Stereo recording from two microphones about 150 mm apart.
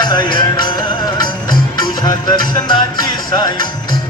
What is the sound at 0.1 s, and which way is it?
Music, 30° left (ahead or behind).